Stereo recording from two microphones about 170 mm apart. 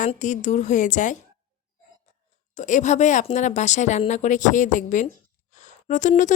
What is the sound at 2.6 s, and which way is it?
Speech, 45° left (ahead or behind).